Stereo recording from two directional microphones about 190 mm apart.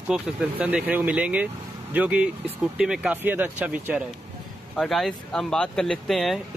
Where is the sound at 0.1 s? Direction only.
5° right (ahead or behind).